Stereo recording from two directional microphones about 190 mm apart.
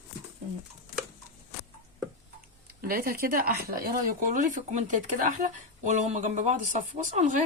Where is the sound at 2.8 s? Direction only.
50° right (ahead or behind).